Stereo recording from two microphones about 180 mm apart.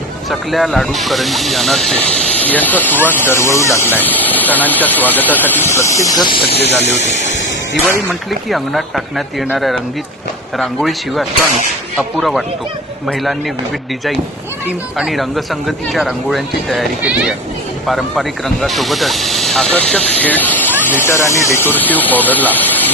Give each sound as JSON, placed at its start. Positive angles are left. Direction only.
{"t": 0.3, "sound": "speech", "side_deg": 0}
{"t": 6.4, "sound": "speech", "side_deg": 65}
{"t": 8.3, "sound": "speech", "side_deg": 0}
{"t": 14.9, "sound": "speech", "side_deg": 0}